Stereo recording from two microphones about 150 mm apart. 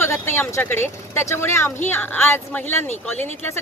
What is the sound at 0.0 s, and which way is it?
Speech, 15° left (ahead or behind).